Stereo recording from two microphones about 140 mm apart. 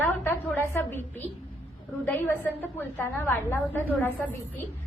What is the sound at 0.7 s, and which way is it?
A woman's voice, 15° left (ahead or behind).